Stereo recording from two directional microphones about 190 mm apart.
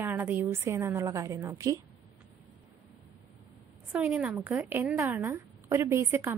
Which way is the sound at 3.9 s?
5° right (ahead or behind).